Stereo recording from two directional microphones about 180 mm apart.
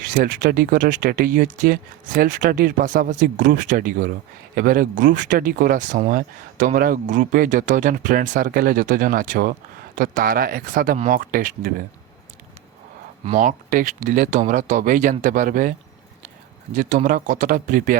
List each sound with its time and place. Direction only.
0.0 s speech: 45° right (ahead or behind)
13.2 s speech: 40° right (ahead or behind)
16.7 s speech: 45° right (ahead or behind)